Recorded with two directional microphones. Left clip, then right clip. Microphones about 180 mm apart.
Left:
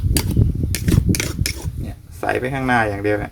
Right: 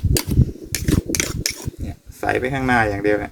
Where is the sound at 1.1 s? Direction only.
25° right (ahead or behind).